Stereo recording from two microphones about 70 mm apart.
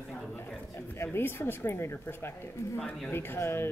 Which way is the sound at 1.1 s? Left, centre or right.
Left.